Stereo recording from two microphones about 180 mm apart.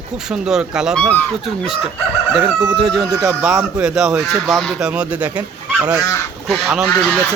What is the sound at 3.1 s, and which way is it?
Speech, 20° right (ahead or behind).